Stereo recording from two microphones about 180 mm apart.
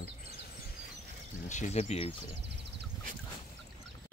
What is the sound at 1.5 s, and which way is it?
Speech, 40° left (ahead or behind).